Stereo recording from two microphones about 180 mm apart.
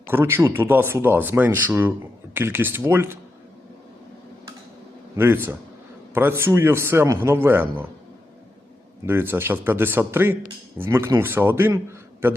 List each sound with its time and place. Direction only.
0.1 s speech: 10° right (ahead or behind)
5.1 s speech: 10° right (ahead or behind)
9.0 s speech: 10° right (ahead or behind)